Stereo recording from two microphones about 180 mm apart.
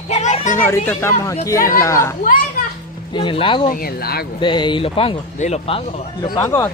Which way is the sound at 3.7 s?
55° left (ahead or behind).